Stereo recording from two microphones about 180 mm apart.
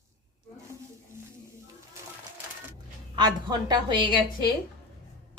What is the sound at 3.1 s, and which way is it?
Speech, 25° right (ahead or behind).